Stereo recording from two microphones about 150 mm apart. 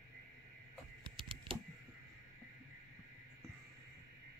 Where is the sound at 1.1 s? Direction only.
35° right (ahead or behind).